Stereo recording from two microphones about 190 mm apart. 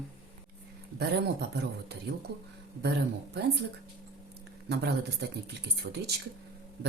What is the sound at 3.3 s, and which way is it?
Speech, 60° right (ahead or behind).